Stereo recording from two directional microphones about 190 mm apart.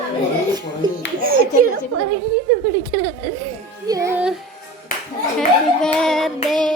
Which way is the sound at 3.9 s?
15° right (ahead or behind).